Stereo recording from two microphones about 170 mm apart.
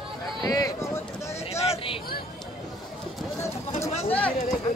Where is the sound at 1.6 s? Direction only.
35° left (ahead or behind).